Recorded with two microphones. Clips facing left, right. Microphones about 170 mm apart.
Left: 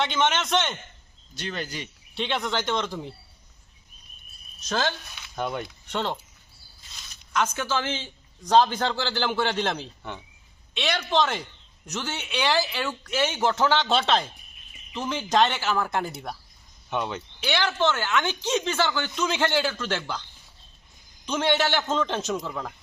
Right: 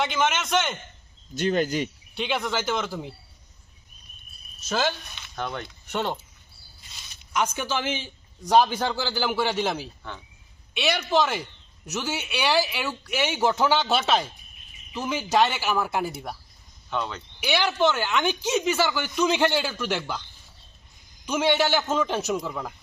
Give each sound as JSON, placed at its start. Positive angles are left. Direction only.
{"t": 0.0, "sound": "speech", "side_deg": 0}
{"t": 1.4, "sound": "speech", "side_deg": -45}
{"t": 2.1, "sound": "speech", "side_deg": 0}
{"t": 4.7, "sound": "speech", "side_deg": -10}
{"t": 5.1, "sound": "speech", "side_deg": 5}
{"t": 5.9, "sound": "speech", "side_deg": -10}
{"t": 7.3, "sound": "speech", "side_deg": -15}
{"t": 10.0, "sound": "speech", "side_deg": 20}
{"t": 10.8, "sound": "speech", "side_deg": -10}
{"t": 16.9, "sound": "speech", "side_deg": 20}
{"t": 17.4, "sound": "speech", "side_deg": -10}
{"t": 21.2, "sound": "speech", "side_deg": -10}